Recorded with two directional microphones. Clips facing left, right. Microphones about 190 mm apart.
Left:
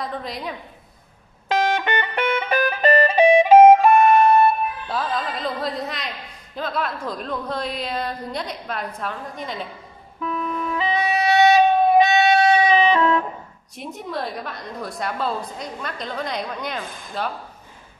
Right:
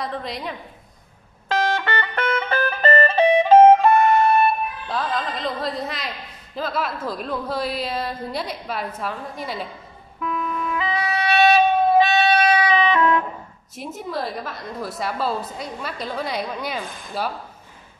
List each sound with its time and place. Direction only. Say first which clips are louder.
0.0 s a man's voice: right 1 dB; centre (ahead or behind)
1.5 s music: left 1 dB; 15° left (ahead or behind)
4.8 s a man's voice: even; centre (ahead or behind)
10.2 s music: even; 30° left (ahead or behind)
13.7 s a man's voice: right 1 dB; centre (ahead or behind)